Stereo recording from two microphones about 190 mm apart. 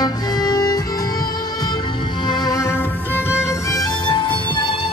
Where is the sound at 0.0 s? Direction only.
20° left (ahead or behind).